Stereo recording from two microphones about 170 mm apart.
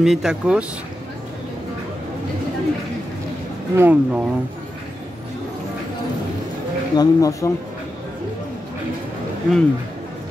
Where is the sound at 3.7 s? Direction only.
10° right (ahead or behind).